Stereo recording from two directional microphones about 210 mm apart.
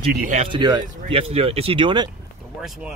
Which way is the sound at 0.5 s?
20° right (ahead or behind).